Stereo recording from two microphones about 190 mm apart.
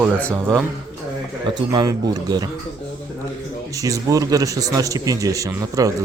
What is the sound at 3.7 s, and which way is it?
Speech, 15° right (ahead or behind).